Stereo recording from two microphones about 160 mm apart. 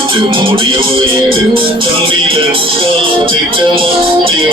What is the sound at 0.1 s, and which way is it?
Speech, 30° right (ahead or behind).